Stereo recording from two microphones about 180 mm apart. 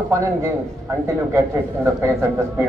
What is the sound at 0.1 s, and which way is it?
A man's voice, 15° right (ahead or behind).